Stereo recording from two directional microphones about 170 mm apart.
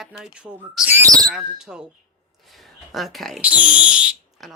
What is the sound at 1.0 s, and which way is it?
Speech, 20° right (ahead or behind).